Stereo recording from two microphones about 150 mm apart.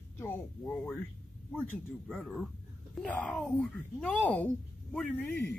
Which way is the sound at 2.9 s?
5° left (ahead or behind).